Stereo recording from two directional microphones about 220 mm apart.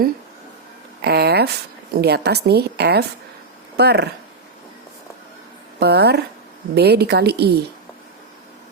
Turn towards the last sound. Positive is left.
turn(degrees=-45)  # may be behind; listen again after turning